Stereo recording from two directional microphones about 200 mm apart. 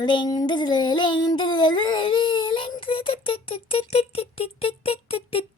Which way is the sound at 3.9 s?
30° left (ahead or behind).